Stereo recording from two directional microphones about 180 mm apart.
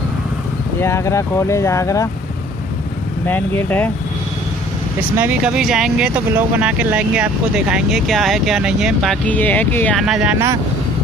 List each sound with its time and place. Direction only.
0.7 s speech: 15° left (ahead or behind)
3.3 s speech: 10° left (ahead or behind)
5.1 s speech: 10° right (ahead or behind); by 9.9 s 10° left (ahead or behind)
9.9 s speech: 5° right (ahead or behind)